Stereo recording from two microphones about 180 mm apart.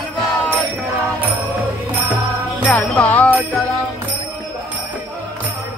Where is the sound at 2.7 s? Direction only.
5° left (ahead or behind).